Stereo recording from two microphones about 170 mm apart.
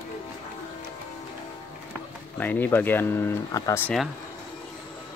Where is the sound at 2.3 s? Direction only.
10° left (ahead or behind).